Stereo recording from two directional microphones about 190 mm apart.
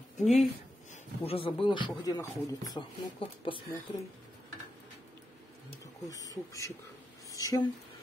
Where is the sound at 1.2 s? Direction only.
30° left (ahead or behind).